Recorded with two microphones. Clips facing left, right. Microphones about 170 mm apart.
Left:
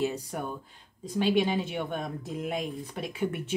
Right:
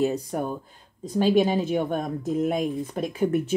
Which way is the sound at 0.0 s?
40° right (ahead or behind).